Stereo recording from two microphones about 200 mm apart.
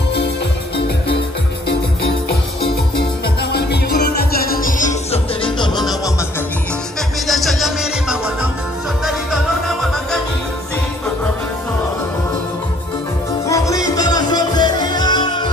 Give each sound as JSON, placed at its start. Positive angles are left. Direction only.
{"t": 3.5, "sound": "music", "side_deg": 55}
{"t": 5.4, "sound": "music", "side_deg": 25}
{"t": 7.2, "sound": "music", "side_deg": 0}
{"t": 13.5, "sound": "music", "side_deg": 15}